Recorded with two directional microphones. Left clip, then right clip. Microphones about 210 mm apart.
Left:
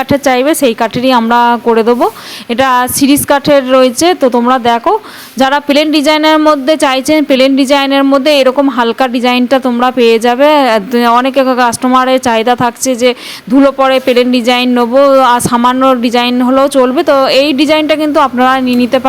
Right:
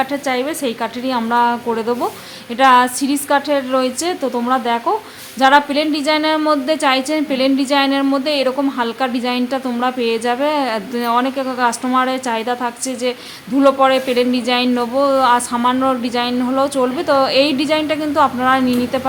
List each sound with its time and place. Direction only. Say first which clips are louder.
0.1 s a woman's voice: left 11 dB; 35° left (ahead or behind)